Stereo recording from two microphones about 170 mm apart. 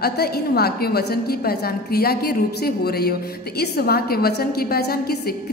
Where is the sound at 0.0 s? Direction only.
70° left (ahead or behind).